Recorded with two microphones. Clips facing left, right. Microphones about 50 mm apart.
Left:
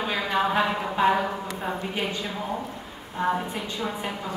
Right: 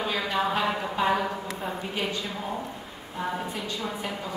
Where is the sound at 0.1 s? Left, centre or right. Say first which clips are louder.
Left 4 dB; centre.